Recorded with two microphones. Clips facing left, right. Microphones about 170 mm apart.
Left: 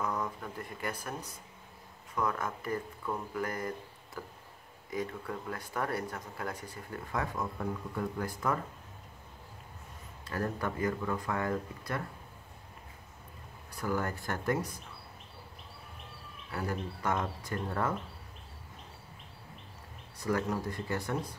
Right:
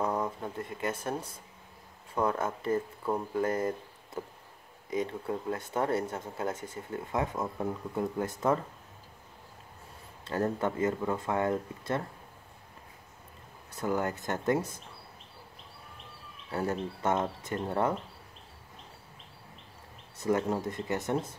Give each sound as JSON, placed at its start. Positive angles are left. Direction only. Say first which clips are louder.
{"t": 0.0, "sound": "speech", "louder": "right 4 dB", "side_deg": -25}
{"t": 10.2, "sound": "speech", "louder": "right 5 dB", "side_deg": -25}
{"t": 13.7, "sound": "speech", "louder": "right 3 dB", "side_deg": -20}
{"t": 16.5, "sound": "speech", "louder": "right 4 dB", "side_deg": -25}
{"t": 20.2, "sound": "speech", "louder": "right 3 dB", "side_deg": -25}